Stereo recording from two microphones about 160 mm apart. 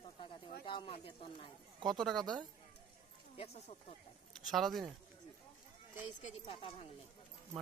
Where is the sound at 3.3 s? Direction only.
40° left (ahead or behind).